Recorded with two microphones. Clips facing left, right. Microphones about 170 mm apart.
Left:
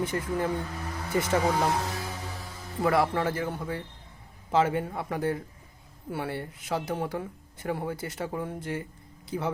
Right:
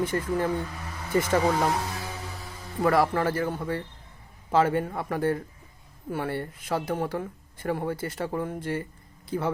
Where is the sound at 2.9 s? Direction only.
20° left (ahead or behind).